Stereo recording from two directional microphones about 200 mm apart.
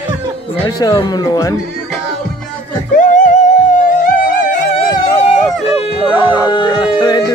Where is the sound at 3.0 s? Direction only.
40° left (ahead or behind).